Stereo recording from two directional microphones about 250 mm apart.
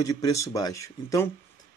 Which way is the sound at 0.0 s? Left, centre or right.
Centre.